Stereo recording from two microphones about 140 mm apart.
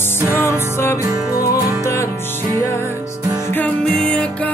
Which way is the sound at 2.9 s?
25° right (ahead or behind).